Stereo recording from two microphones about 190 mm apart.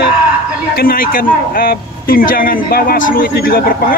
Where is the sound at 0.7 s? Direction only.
50° left (ahead or behind).